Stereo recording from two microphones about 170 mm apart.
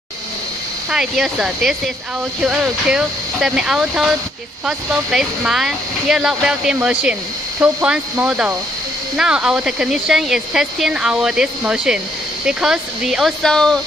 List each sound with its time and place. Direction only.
0.9 s speech: 5° right (ahead or behind)